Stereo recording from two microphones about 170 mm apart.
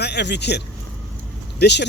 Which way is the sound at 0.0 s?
80° left.